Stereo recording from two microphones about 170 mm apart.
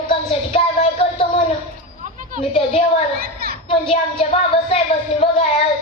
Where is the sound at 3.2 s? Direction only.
65° right (ahead or behind).